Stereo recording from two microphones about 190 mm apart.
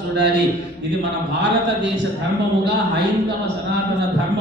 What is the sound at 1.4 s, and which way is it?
Speech, 65° right (ahead or behind).